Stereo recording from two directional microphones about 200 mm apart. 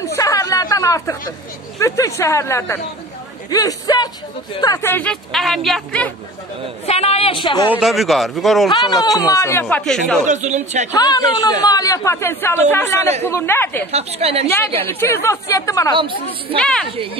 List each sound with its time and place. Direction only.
0.0 s chatter: 15° left (ahead or behind)
1.8 s speech: 15° left (ahead or behind)
6.9 s a woman's voice: 30° left (ahead or behind)
7.7 s speech: centre (ahead or behind)
8.6 s speech: 20° left (ahead or behind); by 10.2 s centre (ahead or behind)
10.2 s a man's voice: 35° right (ahead or behind)
10.9 s speech: 20° left (ahead or behind)
13.9 s a man's voice: 30° right (ahead or behind)
14.8 s speech: 10° left (ahead or behind)
15.9 s a woman's voice: 25° right (ahead or behind)
16.5 s speech: 5° left (ahead or behind)
16.9 s a woman's voice: 25° right (ahead or behind)